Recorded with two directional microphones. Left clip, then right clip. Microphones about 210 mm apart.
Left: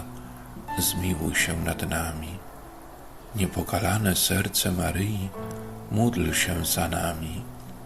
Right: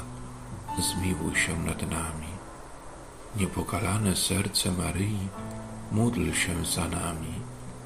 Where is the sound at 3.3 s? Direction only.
25° left (ahead or behind).